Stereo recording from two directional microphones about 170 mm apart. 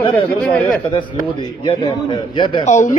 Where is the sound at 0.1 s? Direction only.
10° left (ahead or behind).